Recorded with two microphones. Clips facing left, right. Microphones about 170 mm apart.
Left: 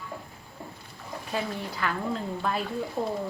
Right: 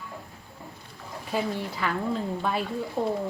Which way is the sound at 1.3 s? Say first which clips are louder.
Right 3 dB; centre (ahead or behind).